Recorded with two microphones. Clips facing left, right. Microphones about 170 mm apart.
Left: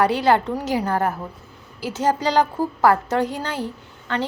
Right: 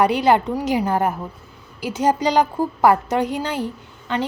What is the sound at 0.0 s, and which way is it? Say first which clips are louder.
A woman's voice: right 1 dB; 15° right (ahead or behind).